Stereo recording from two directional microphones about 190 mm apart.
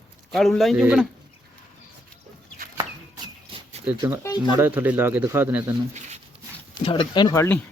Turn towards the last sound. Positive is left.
turn(degrees=15)  # may be behind; listen again after turning